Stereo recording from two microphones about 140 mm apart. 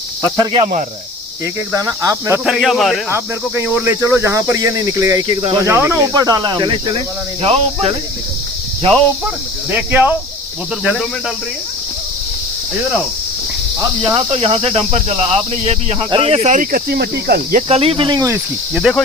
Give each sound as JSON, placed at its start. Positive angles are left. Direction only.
{"t": 0.6, "sound": "speech", "side_deg": -65}
{"t": 1.7, "sound": "cricket", "side_deg": -25}
{"t": 2.4, "sound": "speech", "side_deg": 0}
{"t": 3.1, "sound": "cricket", "side_deg": -15}
{"t": 5.6, "sound": "cricket", "side_deg": -20}
{"t": 7.4, "sound": "speech", "side_deg": -45}
{"t": 9.7, "sound": "speech", "side_deg": -10}
{"t": 14.1, "sound": "speech", "side_deg": -40}
{"t": 17.7, "sound": "speech", "side_deg": -45}
{"t": 18.7, "sound": "speech", "side_deg": 0}